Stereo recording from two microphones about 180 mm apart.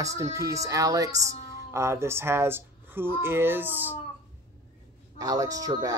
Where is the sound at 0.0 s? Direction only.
15° right (ahead or behind).